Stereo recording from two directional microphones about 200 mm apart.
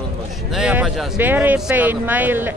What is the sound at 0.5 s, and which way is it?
Speech, 5° right (ahead or behind).